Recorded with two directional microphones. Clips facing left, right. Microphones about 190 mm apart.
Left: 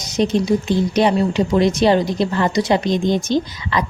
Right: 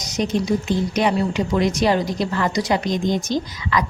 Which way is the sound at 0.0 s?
30° left (ahead or behind).